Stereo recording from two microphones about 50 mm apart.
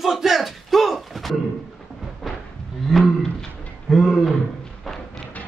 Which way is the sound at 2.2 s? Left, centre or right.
Centre.